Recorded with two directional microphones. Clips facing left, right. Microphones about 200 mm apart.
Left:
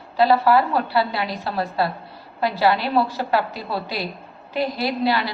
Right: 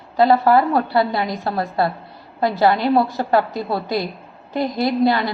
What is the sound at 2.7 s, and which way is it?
A woman's voice, 20° right (ahead or behind).